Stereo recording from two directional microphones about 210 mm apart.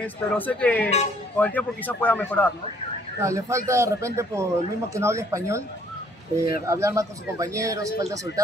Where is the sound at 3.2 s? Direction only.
15° right (ahead or behind).